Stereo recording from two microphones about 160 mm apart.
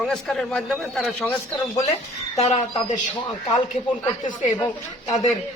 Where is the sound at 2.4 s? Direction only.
45° left (ahead or behind).